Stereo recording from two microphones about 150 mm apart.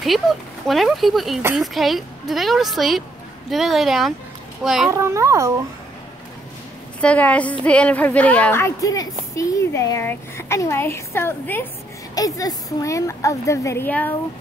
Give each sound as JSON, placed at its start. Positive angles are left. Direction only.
{"t": 0.0, "sound": "speech", "side_deg": 0}
{"t": 4.8, "sound": "a child's voice", "side_deg": -20}
{"t": 7.0, "sound": "a woman's voice", "side_deg": 10}